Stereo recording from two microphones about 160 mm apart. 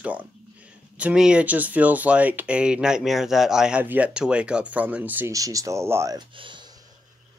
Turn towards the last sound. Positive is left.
turn(degrees=-30)  # may be behind; listen again after turning